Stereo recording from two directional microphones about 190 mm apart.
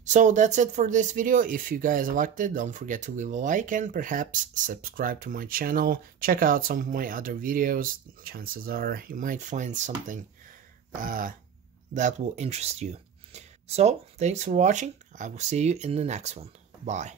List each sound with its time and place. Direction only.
0.0 s speech: 40° right (ahead or behind)